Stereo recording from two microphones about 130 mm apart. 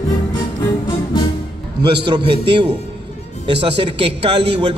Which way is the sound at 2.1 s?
40° right (ahead or behind).